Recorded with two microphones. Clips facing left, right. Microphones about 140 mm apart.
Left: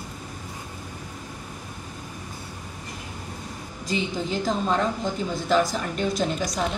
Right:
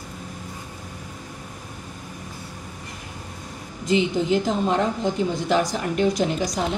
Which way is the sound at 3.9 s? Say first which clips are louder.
Right 7 dB; 20° right (ahead or behind).